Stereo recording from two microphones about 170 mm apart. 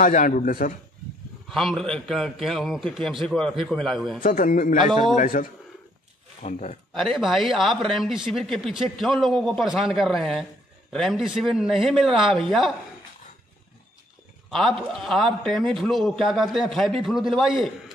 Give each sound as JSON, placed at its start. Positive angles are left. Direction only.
{"t": 0.0, "sound": "a man's voice", "side_deg": 50}
{"t": 1.5, "sound": "speech", "side_deg": 0}
{"t": 4.2, "sound": "a man's voice", "side_deg": 50}
{"t": 4.7, "sound": "a man's voice", "side_deg": -25}
{"t": 5.1, "sound": "a man's voice", "side_deg": 50}
{"t": 6.4, "sound": "speech", "side_deg": 40}
{"t": 6.9, "sound": "speech", "side_deg": 0}
{"t": 14.9, "sound": "speech", "side_deg": 0}